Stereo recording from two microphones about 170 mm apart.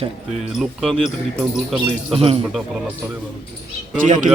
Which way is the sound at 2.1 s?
35° right (ahead or behind).